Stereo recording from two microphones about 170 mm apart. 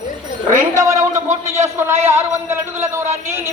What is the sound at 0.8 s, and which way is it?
A man's voice, 20° right (ahead or behind).